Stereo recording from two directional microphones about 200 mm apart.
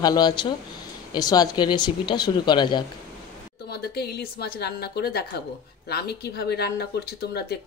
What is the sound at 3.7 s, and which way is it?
Speech, 55° left (ahead or behind).